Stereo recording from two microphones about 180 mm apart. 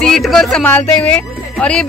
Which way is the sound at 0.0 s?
Centre (ahead or behind).